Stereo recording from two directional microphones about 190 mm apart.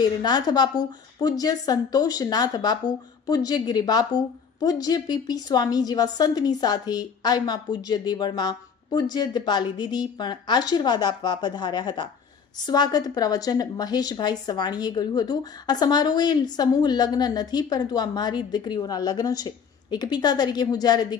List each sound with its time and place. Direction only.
0.0 s a woman's voice: 20° left (ahead or behind)